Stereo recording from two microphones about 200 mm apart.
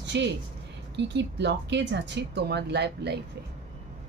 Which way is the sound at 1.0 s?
60° right (ahead or behind).